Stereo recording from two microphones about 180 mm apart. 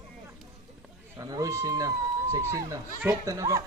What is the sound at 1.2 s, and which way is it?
Run, 20° right (ahead or behind).